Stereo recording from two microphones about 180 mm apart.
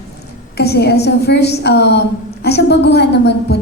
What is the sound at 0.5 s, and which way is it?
A woman's voice, 65° left (ahead or behind).